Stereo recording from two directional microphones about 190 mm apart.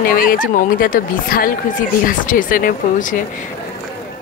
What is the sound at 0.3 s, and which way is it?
A woman's voice, 45° left (ahead or behind).